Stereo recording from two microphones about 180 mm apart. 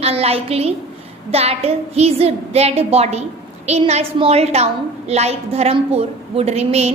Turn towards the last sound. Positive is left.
turn(degrees=-35)  # may be behind; listen again after turning